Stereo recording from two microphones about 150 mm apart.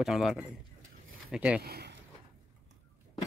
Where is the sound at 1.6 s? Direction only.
90° right.